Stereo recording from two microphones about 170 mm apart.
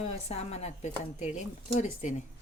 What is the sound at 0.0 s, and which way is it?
Speech, 40° left (ahead or behind).